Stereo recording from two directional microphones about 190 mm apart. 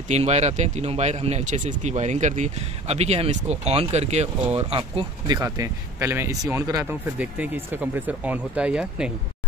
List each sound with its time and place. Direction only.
0.1 s speech: 35° right (ahead or behind); by 9.1 s 5° right (ahead or behind)